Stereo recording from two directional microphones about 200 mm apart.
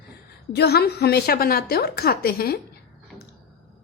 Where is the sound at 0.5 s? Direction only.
55° left (ahead or behind).